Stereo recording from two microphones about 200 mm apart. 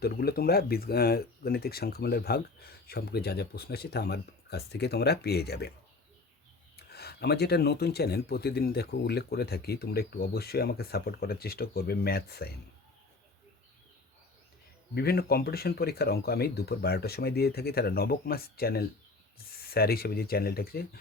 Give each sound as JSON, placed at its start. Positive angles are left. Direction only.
{"t": 0.0, "sound": "speech", "side_deg": 50}
{"t": 6.7, "sound": "speech", "side_deg": 55}
{"t": 14.9, "sound": "speech", "side_deg": 50}